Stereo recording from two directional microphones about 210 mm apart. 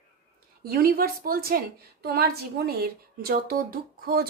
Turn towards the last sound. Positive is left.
turn(degrees=-45)  # may be behind; listen again after turning